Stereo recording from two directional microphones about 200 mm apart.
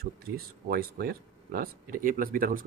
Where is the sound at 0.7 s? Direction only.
50° right (ahead or behind).